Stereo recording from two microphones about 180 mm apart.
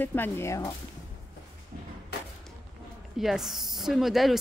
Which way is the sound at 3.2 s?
Centre (ahead or behind).